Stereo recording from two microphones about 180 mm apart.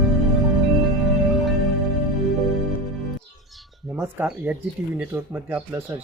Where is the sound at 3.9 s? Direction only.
10° right (ahead or behind).